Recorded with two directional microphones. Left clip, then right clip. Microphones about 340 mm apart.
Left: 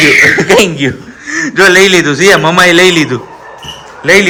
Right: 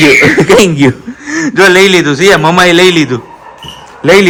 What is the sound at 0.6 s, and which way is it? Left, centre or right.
Speech, centre.